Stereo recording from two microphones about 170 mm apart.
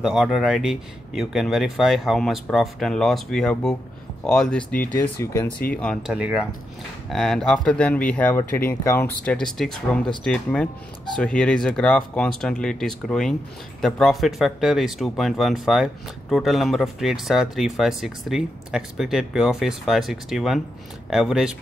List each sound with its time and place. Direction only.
0.0 s speech: centre (ahead or behind)
6.1 s speech: 5° right (ahead or behind)